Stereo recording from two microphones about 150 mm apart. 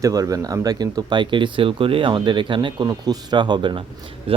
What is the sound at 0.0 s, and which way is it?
Speech, 25° right (ahead or behind).